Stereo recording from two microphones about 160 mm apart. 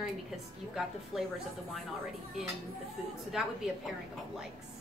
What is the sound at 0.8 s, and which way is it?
Speech, 5° right (ahead or behind).